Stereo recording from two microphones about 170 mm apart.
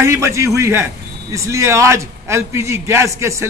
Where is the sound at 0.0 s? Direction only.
15° right (ahead or behind).